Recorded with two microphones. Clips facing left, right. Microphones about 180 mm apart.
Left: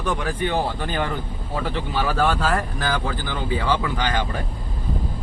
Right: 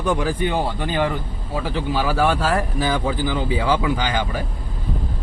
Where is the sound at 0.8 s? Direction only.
5° right (ahead or behind).